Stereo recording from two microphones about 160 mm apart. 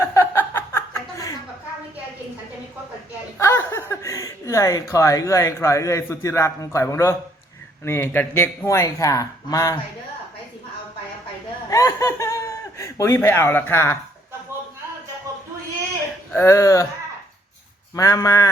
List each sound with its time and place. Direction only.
0.0 s chuckle: 15° left (ahead or behind)
3.3 s a man's voice: 15° left (ahead or behind)
11.7 s snicker: 20° left (ahead or behind)
12.8 s speech: 15° left (ahead or behind)
16.3 s a man's voice: 15° left (ahead or behind)
17.9 s a man's voice: 20° left (ahead or behind)